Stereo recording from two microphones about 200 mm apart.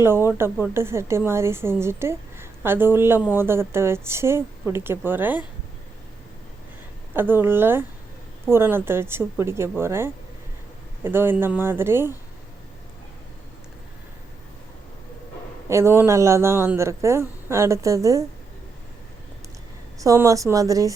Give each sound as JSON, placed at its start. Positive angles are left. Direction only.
{"t": 0.0, "sound": "a woman's voice", "side_deg": -10}
{"t": 7.1, "sound": "a woman's voice", "side_deg": -10}
{"t": 15.7, "sound": "a woman's voice", "side_deg": -15}
{"t": 20.0, "sound": "a woman's voice", "side_deg": -15}